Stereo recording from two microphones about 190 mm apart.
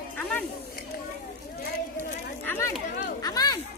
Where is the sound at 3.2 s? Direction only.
20° left (ahead or behind).